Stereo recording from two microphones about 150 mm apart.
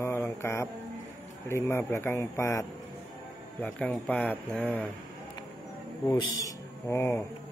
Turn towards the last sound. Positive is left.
turn(degrees=20)  # may be behind; listen again after turning